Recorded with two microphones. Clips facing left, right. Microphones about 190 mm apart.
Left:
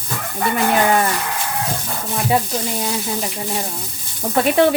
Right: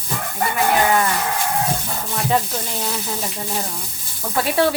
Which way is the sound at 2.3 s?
10° left (ahead or behind).